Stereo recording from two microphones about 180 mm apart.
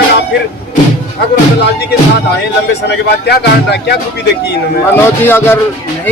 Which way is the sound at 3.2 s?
65° left (ahead or behind).